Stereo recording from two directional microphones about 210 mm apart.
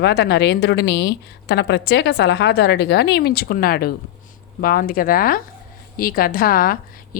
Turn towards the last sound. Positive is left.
turn(degrees=45)  # may be behind; listen again after turning